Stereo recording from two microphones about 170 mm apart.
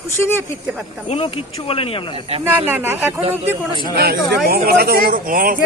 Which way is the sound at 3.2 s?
35° right (ahead or behind).